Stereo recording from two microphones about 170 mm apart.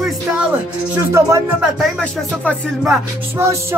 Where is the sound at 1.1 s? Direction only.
15° right (ahead or behind).